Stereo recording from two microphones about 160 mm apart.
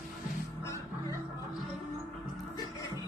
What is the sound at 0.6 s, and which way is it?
Music, 20° left (ahead or behind).